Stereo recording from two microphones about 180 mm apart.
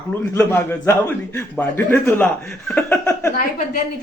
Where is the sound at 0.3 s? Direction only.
15° left (ahead or behind).